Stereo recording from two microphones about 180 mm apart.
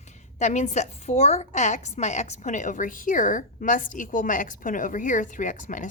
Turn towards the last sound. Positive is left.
turn(degrees=45)  # may be behind; listen again after turning